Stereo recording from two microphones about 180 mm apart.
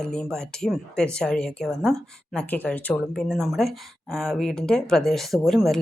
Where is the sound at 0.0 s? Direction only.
5° left (ahead or behind).